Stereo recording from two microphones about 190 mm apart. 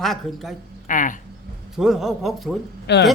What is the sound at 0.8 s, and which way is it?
Speech, 45° left (ahead or behind).